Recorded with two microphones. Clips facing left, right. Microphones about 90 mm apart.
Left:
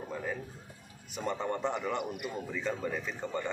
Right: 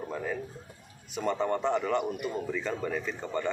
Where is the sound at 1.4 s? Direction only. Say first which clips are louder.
Right 5 dB; 5° left (ahead or behind).